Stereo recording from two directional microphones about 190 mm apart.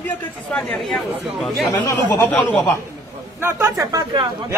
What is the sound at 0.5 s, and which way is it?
Speech, 5° left (ahead or behind).